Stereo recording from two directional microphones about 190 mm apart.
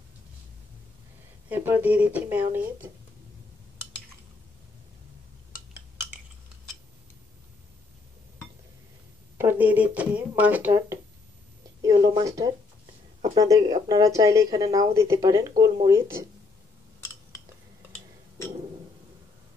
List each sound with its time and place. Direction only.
1.5 s speech: 10° right (ahead or behind)
9.4 s speech: 10° right (ahead or behind)